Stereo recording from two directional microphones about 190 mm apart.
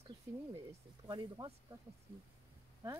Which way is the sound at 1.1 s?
25° right (ahead or behind).